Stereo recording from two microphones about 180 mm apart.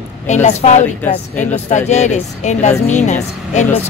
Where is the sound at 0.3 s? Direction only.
40° left (ahead or behind).